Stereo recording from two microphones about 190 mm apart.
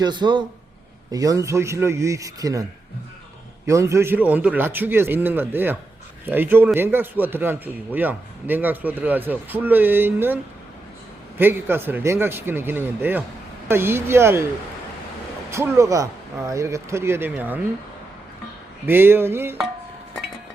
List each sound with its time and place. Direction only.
0.0 s a man's voice: 25° right (ahead or behind)
3.7 s a man's voice: 15° right (ahead or behind)
15.4 s a man's voice: 15° right (ahead or behind)
18.9 s a man's voice: 10° right (ahead or behind)